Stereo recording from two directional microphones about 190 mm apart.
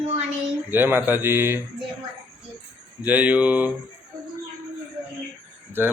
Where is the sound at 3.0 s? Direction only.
10° right (ahead or behind).